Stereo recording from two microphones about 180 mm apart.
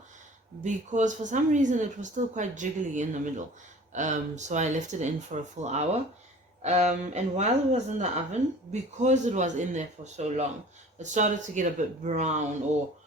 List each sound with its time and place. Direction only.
0.6 s speech: 45° right (ahead or behind)